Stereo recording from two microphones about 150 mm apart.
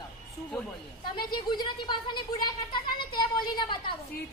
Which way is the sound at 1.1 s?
30° left (ahead or behind).